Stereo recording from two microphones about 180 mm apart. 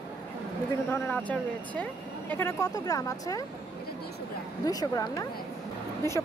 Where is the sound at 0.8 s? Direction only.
10° left (ahead or behind).